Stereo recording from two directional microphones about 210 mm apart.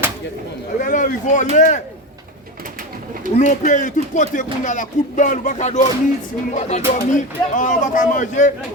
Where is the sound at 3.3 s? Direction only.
35° left (ahead or behind).